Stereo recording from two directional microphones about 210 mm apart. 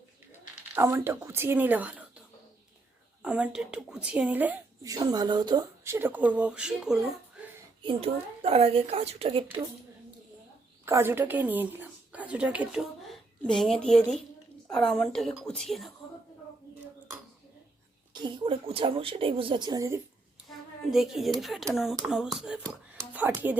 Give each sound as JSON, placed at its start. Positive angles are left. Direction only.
{"t": 0.8, "sound": "a woman's voice", "side_deg": -10}
{"t": 3.2, "sound": "a woman's voice", "side_deg": -5}
{"t": 7.8, "sound": "speech", "side_deg": -25}
{"t": 10.8, "sound": "a woman's voice", "side_deg": -10}
{"t": 18.1, "sound": "speech", "side_deg": -25}
{"t": 20.9, "sound": "a woman's voice", "side_deg": 0}